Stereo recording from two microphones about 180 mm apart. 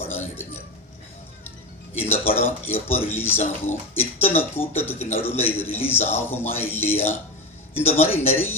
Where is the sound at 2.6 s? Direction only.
10° left (ahead or behind).